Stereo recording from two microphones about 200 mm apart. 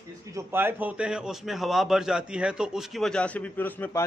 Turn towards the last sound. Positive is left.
turn(degrees=10)  # may be behind; listen again after turning